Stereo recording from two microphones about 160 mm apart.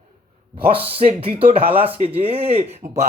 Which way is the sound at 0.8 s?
35° right (ahead or behind).